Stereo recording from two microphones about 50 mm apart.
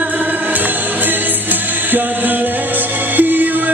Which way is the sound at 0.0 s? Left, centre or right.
Right.